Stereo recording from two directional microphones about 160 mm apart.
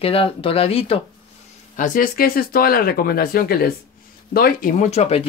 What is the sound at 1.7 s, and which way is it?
Speech, 55° left (ahead or behind).